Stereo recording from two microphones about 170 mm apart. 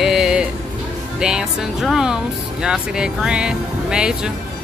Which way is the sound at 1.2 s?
5° right (ahead or behind).